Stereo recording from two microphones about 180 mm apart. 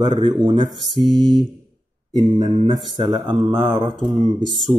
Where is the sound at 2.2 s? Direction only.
25° right (ahead or behind).